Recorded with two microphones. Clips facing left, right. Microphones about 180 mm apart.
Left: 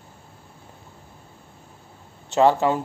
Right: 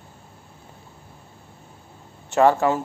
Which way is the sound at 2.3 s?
20° left (ahead or behind).